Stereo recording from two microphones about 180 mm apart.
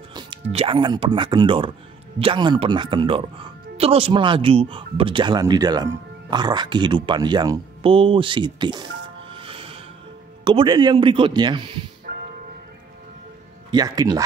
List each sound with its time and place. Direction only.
0.1 s speech: 30° right (ahead or behind)
9.3 s music: 30° right (ahead or behind)
10.4 s speech: 25° right (ahead or behind)
12.1 s music: 55° right (ahead or behind)
13.7 s speech: 20° right (ahead or behind)